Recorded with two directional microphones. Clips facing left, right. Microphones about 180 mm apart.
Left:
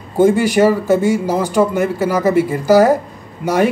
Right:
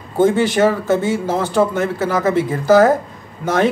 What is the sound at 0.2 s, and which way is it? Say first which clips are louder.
A man's voice: left 2 dB; 10° left (ahead or behind).